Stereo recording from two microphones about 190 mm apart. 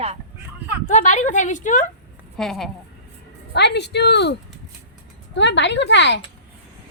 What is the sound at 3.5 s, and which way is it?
A woman's voice, 60° left (ahead or behind).